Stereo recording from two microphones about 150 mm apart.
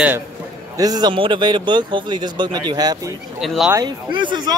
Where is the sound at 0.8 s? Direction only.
25° right (ahead or behind).